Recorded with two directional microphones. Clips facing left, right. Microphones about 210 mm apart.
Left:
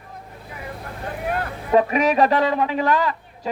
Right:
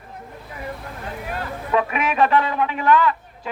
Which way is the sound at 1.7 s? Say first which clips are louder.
Left 5 dB; 35° left (ahead or behind).